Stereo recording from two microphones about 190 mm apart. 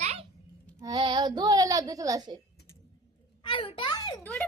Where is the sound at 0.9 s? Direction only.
25° right (ahead or behind).